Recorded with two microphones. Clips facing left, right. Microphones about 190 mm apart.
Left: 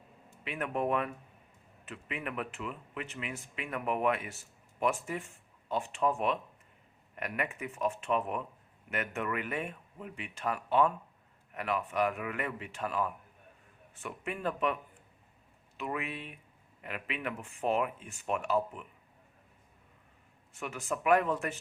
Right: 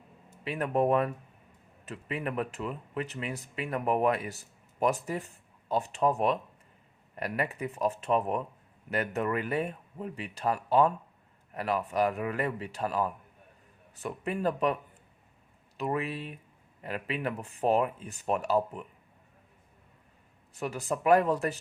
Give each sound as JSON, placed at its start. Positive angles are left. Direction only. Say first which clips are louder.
{"t": 0.4, "sound": "speech", "louder": "right 6 dB", "side_deg": -35}
{"t": 15.8, "sound": "speech", "louder": "right 5 dB", "side_deg": -35}
{"t": 20.5, "sound": "speech", "louder": "right 4 dB", "side_deg": -35}